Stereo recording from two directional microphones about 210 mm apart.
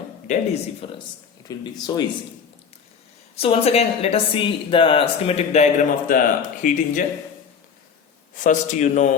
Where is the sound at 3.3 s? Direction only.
25° left (ahead or behind).